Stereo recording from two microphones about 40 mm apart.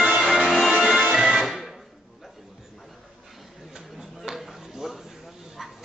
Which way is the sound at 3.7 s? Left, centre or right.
Centre.